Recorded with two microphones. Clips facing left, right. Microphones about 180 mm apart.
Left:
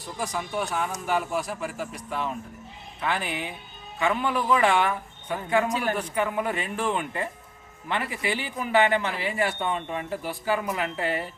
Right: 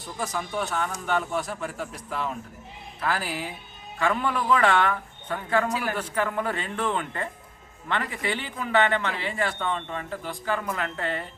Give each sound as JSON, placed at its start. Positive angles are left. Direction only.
{"t": 0.2, "sound": "a man's voice", "side_deg": 5}
{"t": 5.6, "sound": "a man's voice", "side_deg": 20}
{"t": 6.0, "sound": "a man's voice", "side_deg": 5}